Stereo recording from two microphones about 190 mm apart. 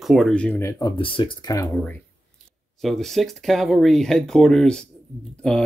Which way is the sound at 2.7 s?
Centre (ahead or behind).